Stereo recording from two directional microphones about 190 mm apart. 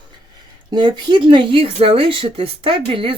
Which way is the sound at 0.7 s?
25° right (ahead or behind).